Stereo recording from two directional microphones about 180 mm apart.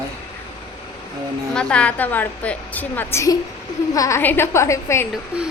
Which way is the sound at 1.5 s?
5° left (ahead or behind).